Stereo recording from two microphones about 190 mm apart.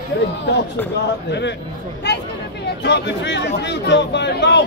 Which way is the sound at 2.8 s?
65° left (ahead or behind).